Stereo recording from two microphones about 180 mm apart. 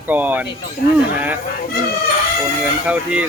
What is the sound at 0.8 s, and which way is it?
Speech, 60° left (ahead or behind).